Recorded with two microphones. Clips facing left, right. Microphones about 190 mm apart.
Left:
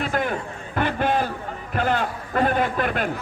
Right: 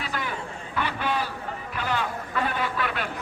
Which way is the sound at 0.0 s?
50° left (ahead or behind).